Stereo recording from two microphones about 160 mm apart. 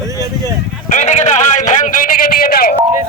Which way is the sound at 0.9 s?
45° left (ahead or behind).